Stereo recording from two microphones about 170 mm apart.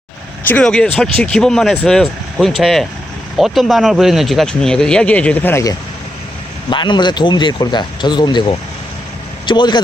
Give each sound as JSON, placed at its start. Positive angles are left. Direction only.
{"t": 0.4, "sound": "speech", "side_deg": 5}
{"t": 6.7, "sound": "speech", "side_deg": 25}